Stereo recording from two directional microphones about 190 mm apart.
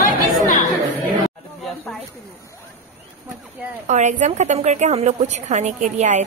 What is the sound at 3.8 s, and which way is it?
A woman's voice, 40° right (ahead or behind).